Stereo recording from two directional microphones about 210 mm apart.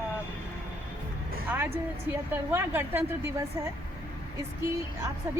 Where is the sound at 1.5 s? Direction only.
10° right (ahead or behind).